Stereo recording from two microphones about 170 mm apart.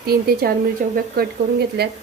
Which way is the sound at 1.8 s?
70° right (ahead or behind).